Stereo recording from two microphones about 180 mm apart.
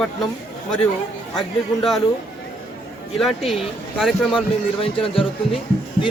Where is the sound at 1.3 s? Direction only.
Centre (ahead or behind).